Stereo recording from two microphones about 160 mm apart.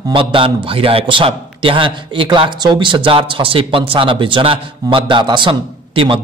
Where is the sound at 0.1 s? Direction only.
35° right (ahead or behind).